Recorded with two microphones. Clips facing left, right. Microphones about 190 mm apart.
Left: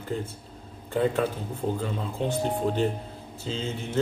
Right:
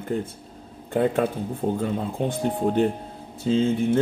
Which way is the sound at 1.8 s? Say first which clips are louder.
Right 4 dB; 50° right (ahead or behind).